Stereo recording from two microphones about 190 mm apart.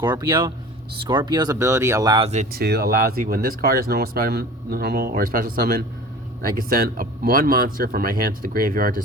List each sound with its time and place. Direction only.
0.0 s speech: 20° right (ahead or behind)
2.5 s speech: 55° right (ahead or behind)